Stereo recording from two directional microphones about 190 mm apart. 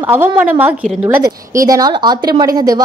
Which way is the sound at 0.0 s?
10° right (ahead or behind).